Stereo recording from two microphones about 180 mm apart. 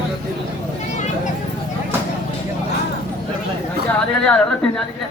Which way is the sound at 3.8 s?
5° left (ahead or behind).